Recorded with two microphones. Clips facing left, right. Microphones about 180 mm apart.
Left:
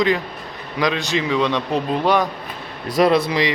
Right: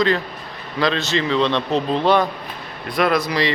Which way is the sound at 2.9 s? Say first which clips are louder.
Left 3 dB; 35° left (ahead or behind).